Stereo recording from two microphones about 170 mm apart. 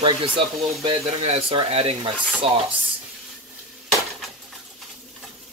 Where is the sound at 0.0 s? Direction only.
30° right (ahead or behind).